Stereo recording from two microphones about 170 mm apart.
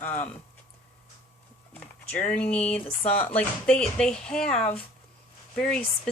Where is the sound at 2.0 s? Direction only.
5° left (ahead or behind).